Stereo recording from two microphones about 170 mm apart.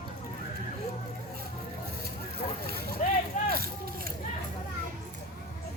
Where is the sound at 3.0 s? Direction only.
45° left (ahead or behind).